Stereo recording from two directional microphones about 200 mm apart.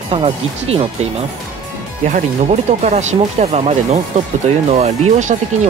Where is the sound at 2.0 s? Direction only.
35° right (ahead or behind).